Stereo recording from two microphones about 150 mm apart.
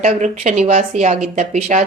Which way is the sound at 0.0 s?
55° right (ahead or behind).